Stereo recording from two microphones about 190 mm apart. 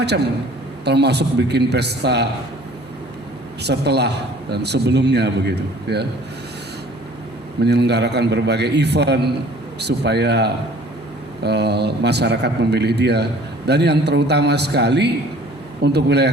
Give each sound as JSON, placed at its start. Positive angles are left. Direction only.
{"t": 0.9, "sound": "a man's voice", "side_deg": -60}
{"t": 3.6, "sound": "a man's voice", "side_deg": -60}
{"t": 7.6, "sound": "a man's voice", "side_deg": -60}